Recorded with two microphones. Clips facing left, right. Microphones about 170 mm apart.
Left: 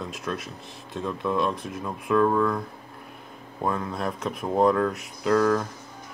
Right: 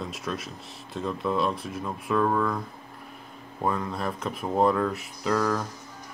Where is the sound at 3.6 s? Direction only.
Centre (ahead or behind).